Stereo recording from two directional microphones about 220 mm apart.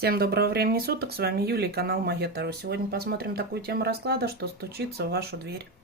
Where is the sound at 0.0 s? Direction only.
45° right (ahead or behind).